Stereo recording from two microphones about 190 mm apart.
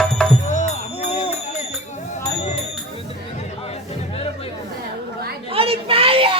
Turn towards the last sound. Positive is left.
turn(degrees=-30)  # may be behind; listen again after turning